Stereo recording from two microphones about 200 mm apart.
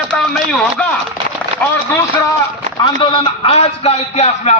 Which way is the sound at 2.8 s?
25° left (ahead or behind).